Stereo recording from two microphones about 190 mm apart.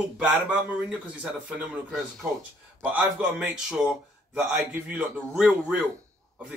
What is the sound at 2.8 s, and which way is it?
A man's voice, 5° right (ahead or behind).